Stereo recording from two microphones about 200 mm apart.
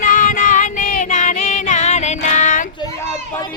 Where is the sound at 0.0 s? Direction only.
40° left (ahead or behind).